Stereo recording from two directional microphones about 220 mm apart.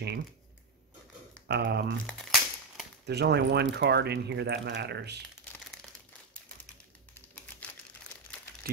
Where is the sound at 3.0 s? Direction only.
50° right (ahead or behind).